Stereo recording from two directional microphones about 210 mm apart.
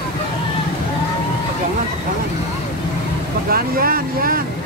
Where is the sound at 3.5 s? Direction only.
45° right (ahead or behind).